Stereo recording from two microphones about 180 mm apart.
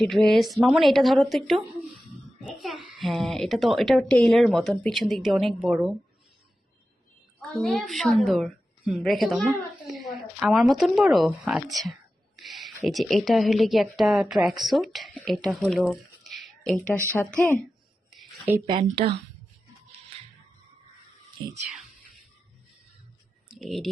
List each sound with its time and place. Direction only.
0.0 s a woman's voice: centre (ahead or behind)
7.5 s a woman's voice: centre (ahead or behind)
18.7 s a woman's voice: 25° right (ahead or behind)
21.4 s a woman's voice: 25° right (ahead or behind)
23.5 s speech: centre (ahead or behind)